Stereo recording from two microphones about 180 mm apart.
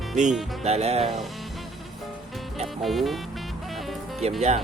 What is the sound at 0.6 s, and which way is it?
Speech, 35° right (ahead or behind).